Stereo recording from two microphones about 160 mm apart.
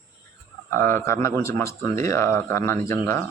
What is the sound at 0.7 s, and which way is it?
Speech, 15° left (ahead or behind).